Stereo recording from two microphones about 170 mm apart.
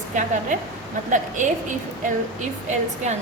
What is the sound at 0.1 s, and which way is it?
Speech, 45° right (ahead or behind).